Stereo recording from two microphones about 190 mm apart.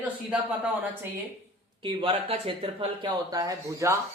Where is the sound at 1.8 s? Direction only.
25° right (ahead or behind).